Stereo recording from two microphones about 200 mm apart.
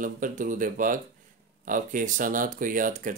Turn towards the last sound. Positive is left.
turn(degrees=-40)  # may be behind; listen again after turning